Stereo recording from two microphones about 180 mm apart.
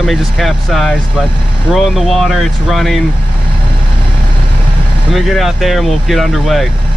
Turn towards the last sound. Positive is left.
turn(degrees=0)  # may be behind; listen again after turning